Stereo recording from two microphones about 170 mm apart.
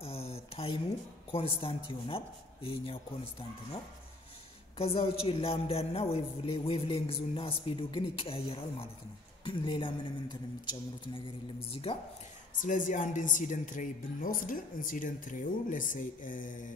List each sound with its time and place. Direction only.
0.0 s a sound: 35° left (ahead or behind)
1.6 s a woman's voice: 30° left (ahead or behind)
4.7 s a woman's voice: 35° left (ahead or behind)
12.6 s speech: 50° left (ahead or behind)